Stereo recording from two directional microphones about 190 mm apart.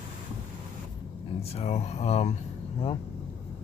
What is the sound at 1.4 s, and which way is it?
Speech, 35° left (ahead or behind).